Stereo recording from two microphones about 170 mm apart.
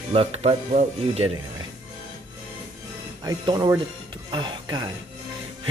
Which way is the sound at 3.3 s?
25° right (ahead or behind).